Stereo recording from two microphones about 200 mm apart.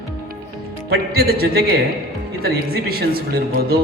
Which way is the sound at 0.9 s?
50° right (ahead or behind).